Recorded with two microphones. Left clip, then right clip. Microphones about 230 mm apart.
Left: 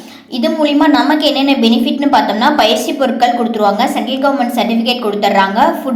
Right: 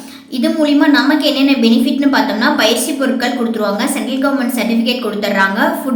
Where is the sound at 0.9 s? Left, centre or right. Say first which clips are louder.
Left 1 dB; centre.